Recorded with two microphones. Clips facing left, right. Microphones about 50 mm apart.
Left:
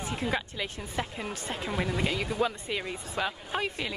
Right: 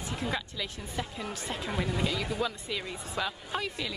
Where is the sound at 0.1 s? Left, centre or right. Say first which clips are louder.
Left 2 dB; left.